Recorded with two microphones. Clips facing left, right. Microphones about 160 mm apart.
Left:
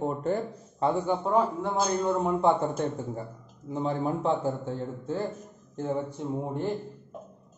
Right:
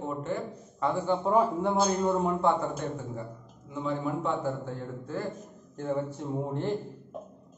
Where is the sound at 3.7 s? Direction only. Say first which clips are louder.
Left 3 dB; 35° left (ahead or behind).